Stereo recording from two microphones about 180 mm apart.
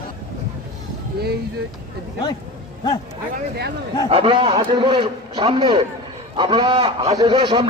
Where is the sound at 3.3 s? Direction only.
65° right (ahead or behind).